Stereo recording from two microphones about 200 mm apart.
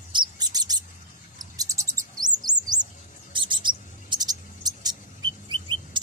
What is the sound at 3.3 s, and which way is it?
Mouse, 25° right (ahead or behind).